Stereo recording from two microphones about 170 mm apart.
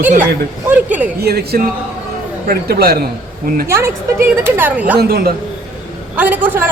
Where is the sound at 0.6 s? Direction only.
10° right (ahead or behind).